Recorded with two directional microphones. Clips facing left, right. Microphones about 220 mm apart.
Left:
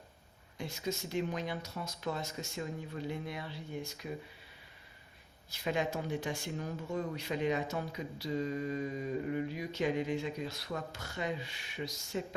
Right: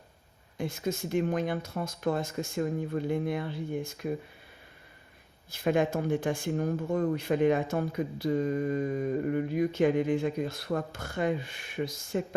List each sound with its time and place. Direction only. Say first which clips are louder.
0.5 s speech: right 6 dB; 50° right (ahead or behind)
5.5 s speech: right 8 dB; 50° right (ahead or behind)